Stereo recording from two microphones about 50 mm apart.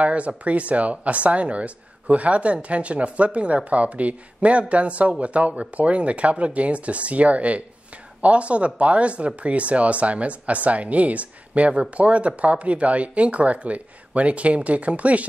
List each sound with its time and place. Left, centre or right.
0.0 s speech: right